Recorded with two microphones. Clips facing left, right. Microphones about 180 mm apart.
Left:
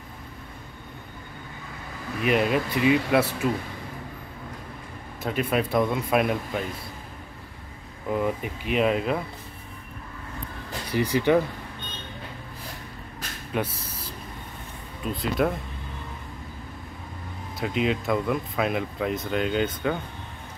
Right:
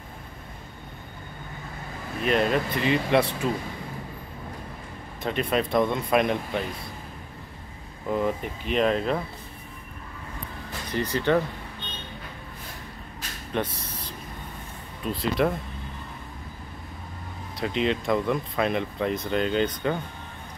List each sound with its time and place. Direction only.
2.2 s speech: 10° left (ahead or behind)
5.2 s speech: 5° left (ahead or behind)
8.1 s speech: 5° left (ahead or behind)
10.9 s speech: 10° left (ahead or behind)
13.5 s a sound: 5° left (ahead or behind)
15.0 s speech: centre (ahead or behind)
17.6 s speech: 5° left (ahead or behind)